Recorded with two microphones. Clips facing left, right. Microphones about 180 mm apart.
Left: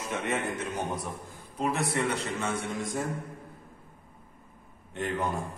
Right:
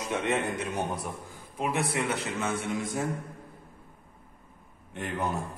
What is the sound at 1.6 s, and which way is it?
Speech, centre (ahead or behind).